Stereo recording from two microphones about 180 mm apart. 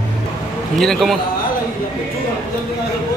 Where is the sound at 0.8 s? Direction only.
Centre (ahead or behind).